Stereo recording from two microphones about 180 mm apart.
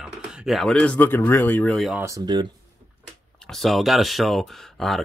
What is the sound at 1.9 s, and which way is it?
Speech, 15° right (ahead or behind).